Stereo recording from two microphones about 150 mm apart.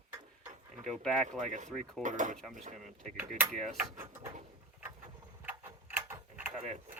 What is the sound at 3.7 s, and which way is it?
Speech, 15° right (ahead or behind).